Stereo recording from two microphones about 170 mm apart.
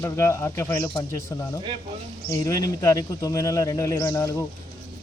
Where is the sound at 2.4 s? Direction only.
20° left (ahead or behind).